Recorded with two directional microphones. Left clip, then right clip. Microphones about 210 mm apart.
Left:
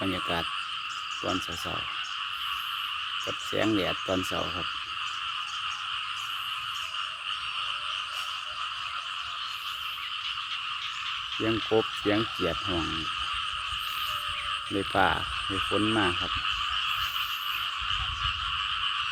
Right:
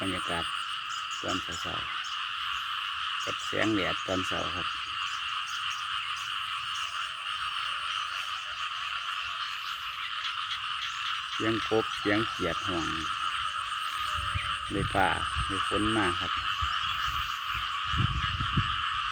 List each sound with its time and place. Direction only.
0.0 s frog: 20° left (ahead or behind)
3.6 s frog: 10° left (ahead or behind)
11.4 s frog: 10° left (ahead or behind)
14.9 s frog: 10° left (ahead or behind)